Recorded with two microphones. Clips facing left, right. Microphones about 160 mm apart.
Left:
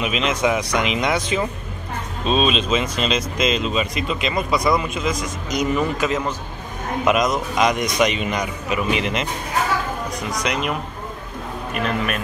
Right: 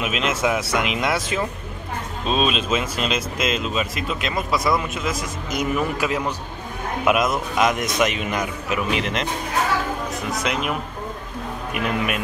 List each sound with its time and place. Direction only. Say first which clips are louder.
0.0 s speech: left 2 dB; 5° right (ahead or behind)
10.4 s speech: left 2 dB; centre (ahead or behind)
11.7 s a man's voice: left 1 dB; 10° right (ahead or behind)